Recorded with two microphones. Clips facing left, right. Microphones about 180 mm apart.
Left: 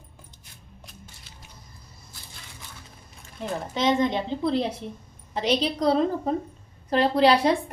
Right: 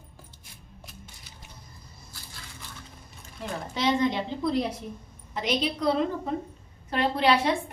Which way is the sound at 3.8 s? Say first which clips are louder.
Left 2 dB; 20° left (ahead or behind).